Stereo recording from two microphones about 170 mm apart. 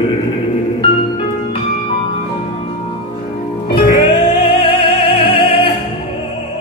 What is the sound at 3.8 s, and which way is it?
Music, 30° left (ahead or behind).